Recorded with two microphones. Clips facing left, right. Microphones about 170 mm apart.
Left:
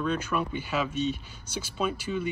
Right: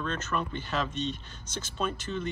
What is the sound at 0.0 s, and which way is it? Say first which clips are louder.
Speech: left 4 dB; 10° left (ahead or behind).